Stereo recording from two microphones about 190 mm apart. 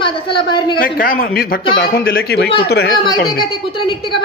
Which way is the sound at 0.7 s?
45° left (ahead or behind).